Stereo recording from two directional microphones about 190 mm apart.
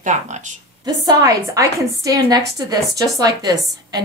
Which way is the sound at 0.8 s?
20° right (ahead or behind).